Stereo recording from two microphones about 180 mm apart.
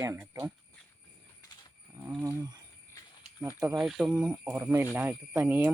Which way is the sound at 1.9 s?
10° right (ahead or behind).